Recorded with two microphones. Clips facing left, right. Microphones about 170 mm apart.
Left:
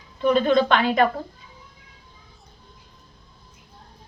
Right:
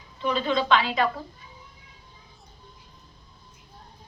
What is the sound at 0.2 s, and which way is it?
Speech, 55° left (ahead or behind).